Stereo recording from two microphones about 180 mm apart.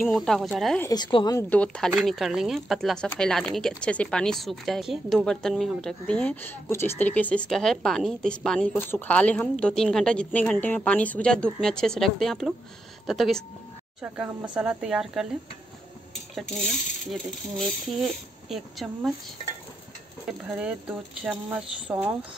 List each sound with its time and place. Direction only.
0.0 s speech: centre (ahead or behind)
0.8 s a woman's voice: 25° left (ahead or behind)
1.5 s speech: 5° left (ahead or behind)
16.1 s rub: centre (ahead or behind)
17.1 s speech: centre (ahead or behind)
20.2 s speech: 5° right (ahead or behind)